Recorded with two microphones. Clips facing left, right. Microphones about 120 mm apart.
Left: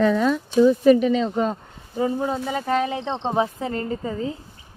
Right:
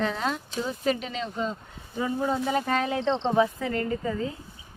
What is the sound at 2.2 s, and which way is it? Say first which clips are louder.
Speech: left 1 dB; 15° left (ahead or behind).